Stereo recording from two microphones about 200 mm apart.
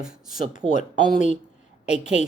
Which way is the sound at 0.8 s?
5° right (ahead or behind).